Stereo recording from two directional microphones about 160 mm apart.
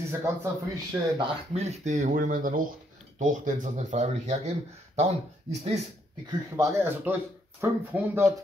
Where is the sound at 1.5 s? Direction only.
40° right (ahead or behind).